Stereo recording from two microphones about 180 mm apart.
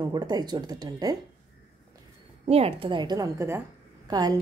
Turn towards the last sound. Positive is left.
turn(degrees=-20)  # may be behind; listen again after turning